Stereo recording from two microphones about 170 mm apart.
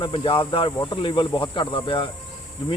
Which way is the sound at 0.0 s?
30° left (ahead or behind).